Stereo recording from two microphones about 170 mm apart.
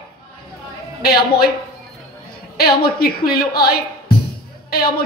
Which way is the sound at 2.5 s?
65° left (ahead or behind).